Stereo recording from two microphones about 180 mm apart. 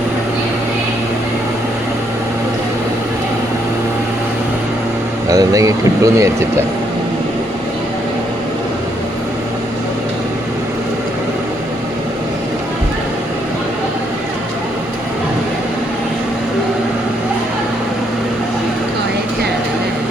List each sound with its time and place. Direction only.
5.3 s speech: 20° right (ahead or behind)